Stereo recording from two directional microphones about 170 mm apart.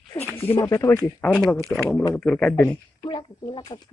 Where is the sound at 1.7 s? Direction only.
5° left (ahead or behind).